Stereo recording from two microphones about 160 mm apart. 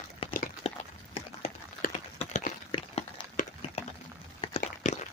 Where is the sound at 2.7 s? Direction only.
35° left (ahead or behind).